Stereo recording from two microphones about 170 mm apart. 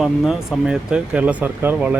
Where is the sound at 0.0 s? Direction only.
5° right (ahead or behind).